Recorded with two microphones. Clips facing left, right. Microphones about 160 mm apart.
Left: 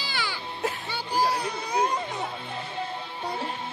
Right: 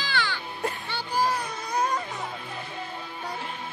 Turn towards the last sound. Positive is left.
turn(degrees=30)  # may be behind; listen again after turning